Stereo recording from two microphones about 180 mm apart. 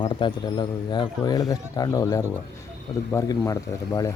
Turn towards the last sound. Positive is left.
turn(degrees=20)  # may be behind; listen again after turning